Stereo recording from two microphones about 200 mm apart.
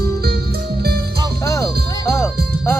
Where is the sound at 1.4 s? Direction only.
15° left (ahead or behind).